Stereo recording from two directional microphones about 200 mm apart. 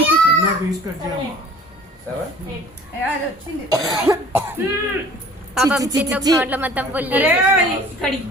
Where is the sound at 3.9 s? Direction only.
15° right (ahead or behind).